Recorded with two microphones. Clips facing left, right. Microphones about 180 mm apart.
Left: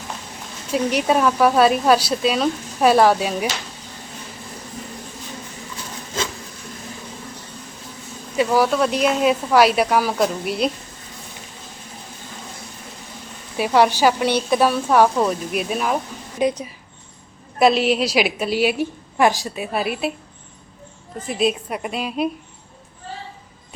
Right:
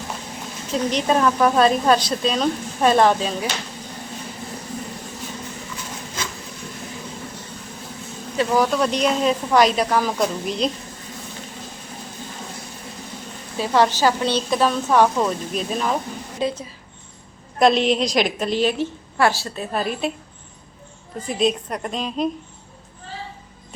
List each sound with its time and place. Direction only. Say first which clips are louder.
0.7 s speech: left 1 dB; 10° left (ahead or behind)
8.4 s speech: left 2 dB; 5° left (ahead or behind)
13.6 s speech: left 2 dB; 15° left (ahead or behind)
17.6 s speech: even; 5° left (ahead or behind)
21.2 s speech: even; 5° left (ahead or behind)